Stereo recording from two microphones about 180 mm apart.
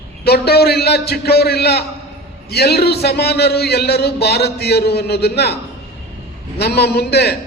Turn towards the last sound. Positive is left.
turn(degrees=65)  # may be behind; listen again after turning